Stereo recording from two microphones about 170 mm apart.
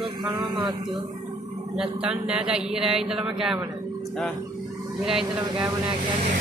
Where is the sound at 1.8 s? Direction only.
5° right (ahead or behind).